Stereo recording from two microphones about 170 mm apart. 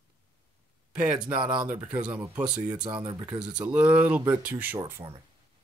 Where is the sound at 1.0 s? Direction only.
10° right (ahead or behind).